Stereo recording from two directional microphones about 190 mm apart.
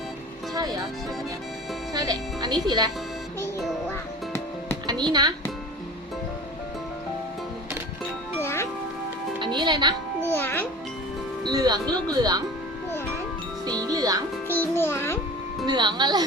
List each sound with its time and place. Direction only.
0.5 s music: 20° right (ahead or behind)
1.9 s speech: 20° right (ahead or behind)
4.9 s speech: 20° right (ahead or behind)
8.4 s music: 15° left (ahead or behind)
9.4 s music: 25° right (ahead or behind)
10.2 s music: 10° left (ahead or behind)
11.4 s speech: 20° right (ahead or behind)
13.7 s speech: 20° right (ahead or behind)
14.4 s music: 10° left (ahead or behind)
15.6 s speech: 20° right (ahead or behind)